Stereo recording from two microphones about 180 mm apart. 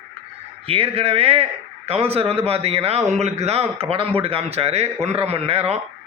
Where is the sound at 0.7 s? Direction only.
30° right (ahead or behind).